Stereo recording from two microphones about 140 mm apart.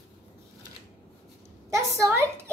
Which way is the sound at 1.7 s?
20° right (ahead or behind).